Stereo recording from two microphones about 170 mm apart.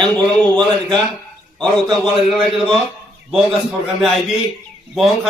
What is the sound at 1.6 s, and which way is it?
A man's voice, 5° left (ahead or behind).